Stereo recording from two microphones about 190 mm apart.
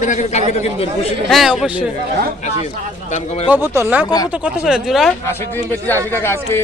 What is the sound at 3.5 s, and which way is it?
Speech, 10° right (ahead or behind).